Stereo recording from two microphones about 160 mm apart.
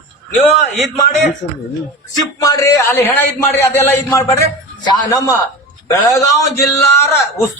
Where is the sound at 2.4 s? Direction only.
20° left (ahead or behind).